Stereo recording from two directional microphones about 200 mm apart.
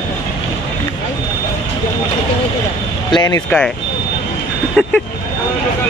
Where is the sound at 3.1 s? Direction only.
20° left (ahead or behind).